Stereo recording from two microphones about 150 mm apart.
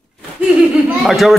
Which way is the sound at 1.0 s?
Centre (ahead or behind).